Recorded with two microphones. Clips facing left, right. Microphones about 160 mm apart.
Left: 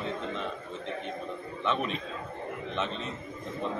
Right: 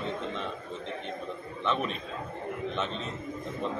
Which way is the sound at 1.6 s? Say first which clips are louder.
Even; centre (ahead or behind).